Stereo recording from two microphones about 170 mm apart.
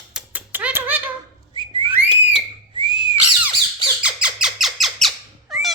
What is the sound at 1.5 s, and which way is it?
Whistling, 30° right (ahead or behind).